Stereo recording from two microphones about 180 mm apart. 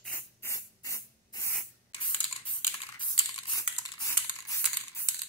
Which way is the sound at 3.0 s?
25° left (ahead or behind).